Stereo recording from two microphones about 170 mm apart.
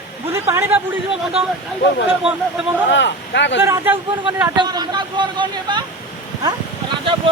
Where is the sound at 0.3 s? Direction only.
15° right (ahead or behind).